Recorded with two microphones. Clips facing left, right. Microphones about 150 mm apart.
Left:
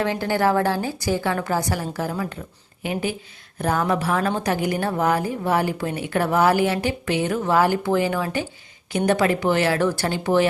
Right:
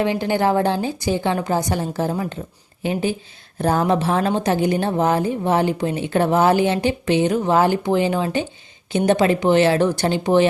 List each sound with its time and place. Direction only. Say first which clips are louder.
0.0 s a woman's voice: right 2 dB; 20° right (ahead or behind)